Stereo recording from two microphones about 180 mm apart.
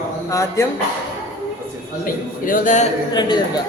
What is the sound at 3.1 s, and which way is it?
Speech, 25° left (ahead or behind).